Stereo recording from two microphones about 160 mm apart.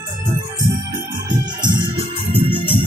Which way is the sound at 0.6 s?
25° right (ahead or behind).